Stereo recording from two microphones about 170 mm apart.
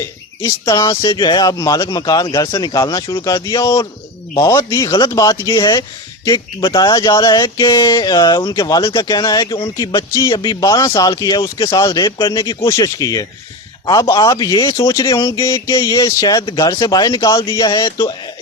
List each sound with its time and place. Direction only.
0.0 s speech: 20° left (ahead or behind)